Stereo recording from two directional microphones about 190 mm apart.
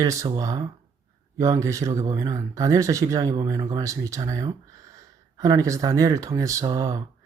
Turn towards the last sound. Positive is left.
turn(degrees=-20)  # may be behind; listen again after turning